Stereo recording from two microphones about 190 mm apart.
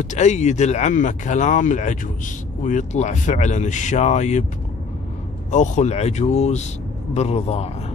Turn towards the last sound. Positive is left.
turn(degrees=35)  # may be behind; listen again after turning